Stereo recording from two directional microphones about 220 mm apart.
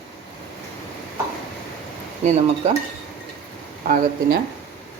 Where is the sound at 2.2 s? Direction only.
30° right (ahead or behind).